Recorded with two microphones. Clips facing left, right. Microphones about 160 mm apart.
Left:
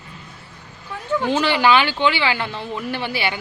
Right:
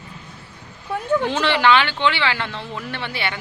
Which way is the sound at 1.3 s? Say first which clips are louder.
Left 3 dB; 5° left (ahead or behind).